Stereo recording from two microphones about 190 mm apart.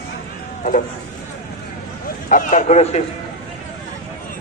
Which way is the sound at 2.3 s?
40° left (ahead or behind).